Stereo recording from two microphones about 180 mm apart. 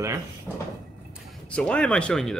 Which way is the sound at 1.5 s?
5° left (ahead or behind).